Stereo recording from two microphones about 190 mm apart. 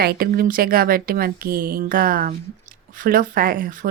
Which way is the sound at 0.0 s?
50° right (ahead or behind).